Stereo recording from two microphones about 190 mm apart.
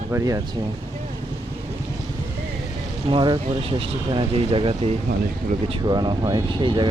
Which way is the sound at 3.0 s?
25° right (ahead or behind).